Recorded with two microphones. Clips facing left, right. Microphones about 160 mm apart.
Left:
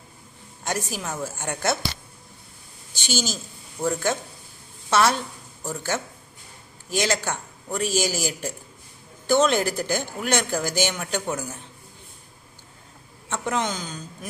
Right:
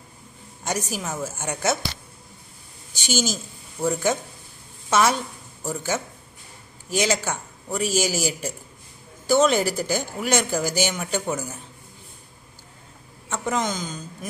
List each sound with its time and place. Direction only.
0.7 s a woman's voice: centre (ahead or behind)
2.9 s a woman's voice: 45° right (ahead or behind)
3.8 s a woman's voice: 5° right (ahead or behind)
13.3 s a woman's voice: centre (ahead or behind)